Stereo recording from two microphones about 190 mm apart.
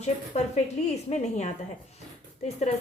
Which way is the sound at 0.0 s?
35° left (ahead or behind).